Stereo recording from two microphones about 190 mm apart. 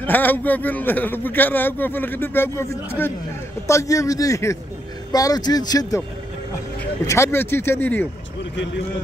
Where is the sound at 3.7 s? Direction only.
15° left (ahead or behind).